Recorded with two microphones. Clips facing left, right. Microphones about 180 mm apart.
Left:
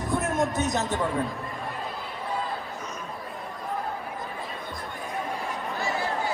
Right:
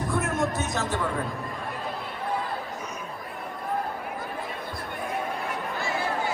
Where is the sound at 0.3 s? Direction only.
20° left (ahead or behind).